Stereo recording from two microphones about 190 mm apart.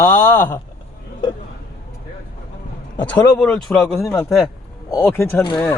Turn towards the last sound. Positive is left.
turn(degrees=20)  # may be behind; listen again after turning